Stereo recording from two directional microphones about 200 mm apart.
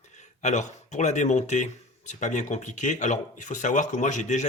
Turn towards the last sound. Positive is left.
turn(degrees=35)  # may be behind; listen again after turning